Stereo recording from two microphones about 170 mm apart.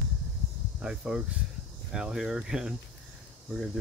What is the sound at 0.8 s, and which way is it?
Speech, 5° right (ahead or behind).